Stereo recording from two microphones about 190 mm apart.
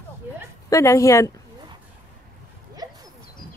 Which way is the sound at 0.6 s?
15° left (ahead or behind).